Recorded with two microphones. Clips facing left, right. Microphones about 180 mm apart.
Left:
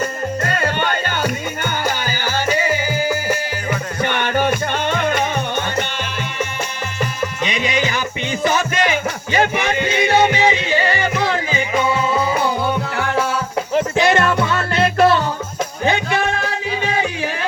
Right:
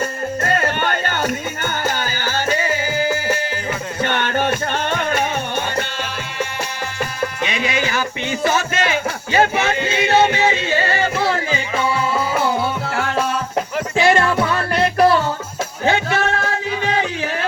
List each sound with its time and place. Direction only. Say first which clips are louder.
1.6 s music: left 1 dB; 10° left (ahead or behind)
4.0 s music: left 1 dB; 15° left (ahead or behind)
7.4 s music: left 2 dB; 20° left (ahead or behind)
14.0 s music: right 4 dB; 20° left (ahead or behind)